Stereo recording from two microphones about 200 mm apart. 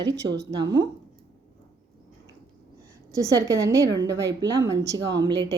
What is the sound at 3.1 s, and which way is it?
A woman's voice, 15° right (ahead or behind).